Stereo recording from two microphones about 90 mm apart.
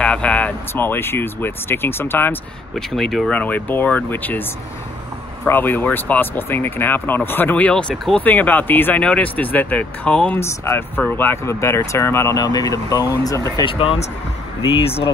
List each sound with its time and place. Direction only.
0.0 s speech: 15° left (ahead or behind)
2.7 s speech: 5° left (ahead or behind)
3.3 s speech: 20° left (ahead or behind)
7.9 s speech: centre (ahead or behind)
8.2 s speech: 20° left (ahead or behind)
10.4 s speech: 30° left (ahead or behind)
11.4 s speech: 30° left (ahead or behind)
12.4 s speech: 45° left (ahead or behind)
13.7 s speech: 80° left